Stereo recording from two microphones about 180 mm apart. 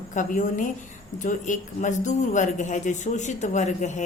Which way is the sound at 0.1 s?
45° left (ahead or behind).